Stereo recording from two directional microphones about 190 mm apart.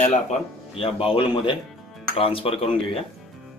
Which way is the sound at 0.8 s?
30° left (ahead or behind).